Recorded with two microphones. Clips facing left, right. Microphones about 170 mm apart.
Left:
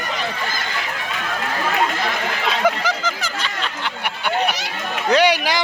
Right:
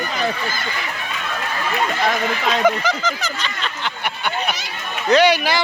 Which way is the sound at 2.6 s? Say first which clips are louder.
Right 1 dB; 10° left (ahead or behind).